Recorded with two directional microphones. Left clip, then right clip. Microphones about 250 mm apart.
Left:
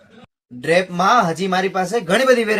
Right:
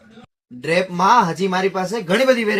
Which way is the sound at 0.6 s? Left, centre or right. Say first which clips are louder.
Left 1 dB; centre.